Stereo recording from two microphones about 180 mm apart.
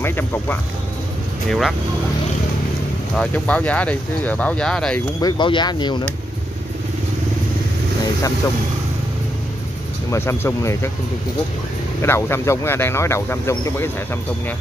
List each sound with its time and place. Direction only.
0.0 s speech: 10° left (ahead or behind)
1.5 s speech: centre (ahead or behind)
3.2 s speech: 5° left (ahead or behind)
5.2 s speech: 25° left (ahead or behind)
10.1 s speech: 15° left (ahead or behind)
12.0 s speech: 15° left (ahead or behind)